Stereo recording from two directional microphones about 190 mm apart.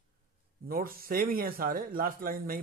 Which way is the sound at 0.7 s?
50° right (ahead or behind).